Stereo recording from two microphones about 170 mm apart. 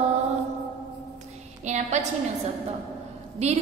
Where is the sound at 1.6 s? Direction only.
45° right (ahead or behind).